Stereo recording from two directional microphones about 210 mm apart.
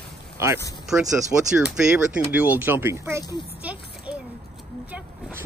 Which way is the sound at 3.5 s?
5° right (ahead or behind).